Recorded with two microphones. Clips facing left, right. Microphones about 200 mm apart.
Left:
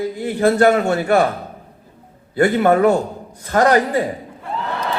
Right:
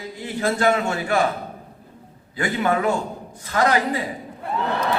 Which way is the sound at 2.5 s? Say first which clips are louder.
Left 5 dB; 45° left (ahead or behind).